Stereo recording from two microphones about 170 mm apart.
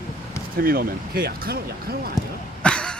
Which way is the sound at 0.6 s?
60° right (ahead or behind).